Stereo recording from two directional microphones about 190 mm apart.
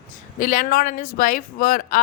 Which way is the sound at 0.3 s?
45° left (ahead or behind).